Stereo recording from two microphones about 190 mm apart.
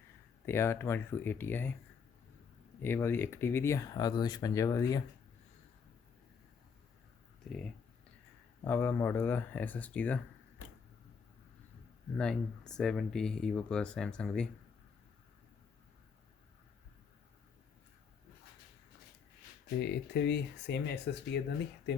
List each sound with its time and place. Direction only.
0.4 s speech: 15° left (ahead or behind)
2.8 s speech: 10° left (ahead or behind)
8.6 s speech: 10° left (ahead or behind)
12.1 s speech: 5° left (ahead or behind)
19.8 s speech: 60° left (ahead or behind)